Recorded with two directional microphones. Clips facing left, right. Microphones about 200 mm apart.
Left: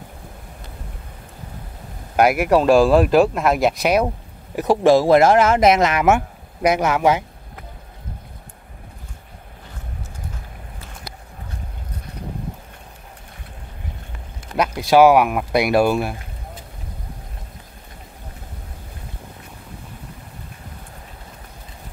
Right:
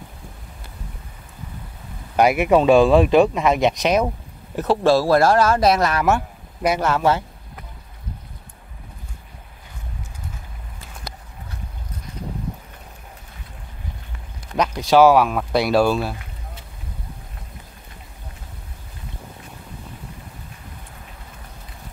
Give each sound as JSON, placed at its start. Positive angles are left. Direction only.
{"t": 2.1, "sound": "speech", "side_deg": 5}
{"t": 14.6, "sound": "speech", "side_deg": 10}